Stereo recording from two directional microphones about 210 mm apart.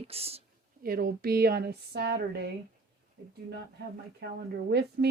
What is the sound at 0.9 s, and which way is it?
A woman's voice, 45° right (ahead or behind).